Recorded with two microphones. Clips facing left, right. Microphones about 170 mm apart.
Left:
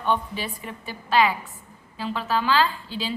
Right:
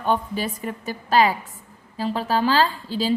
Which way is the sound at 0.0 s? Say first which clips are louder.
Right 3 dB; 40° right (ahead or behind).